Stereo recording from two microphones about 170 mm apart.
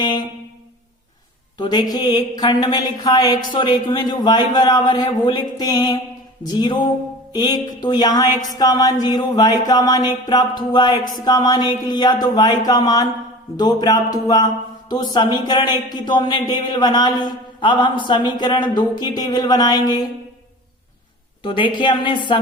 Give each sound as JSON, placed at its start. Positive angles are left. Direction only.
{"t": 0.0, "sound": "speech", "side_deg": 25}
{"t": 1.5, "sound": "speech", "side_deg": 25}
{"t": 21.4, "sound": "speech", "side_deg": 30}